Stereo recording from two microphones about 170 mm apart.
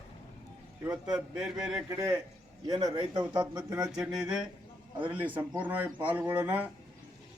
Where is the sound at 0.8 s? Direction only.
5° right (ahead or behind).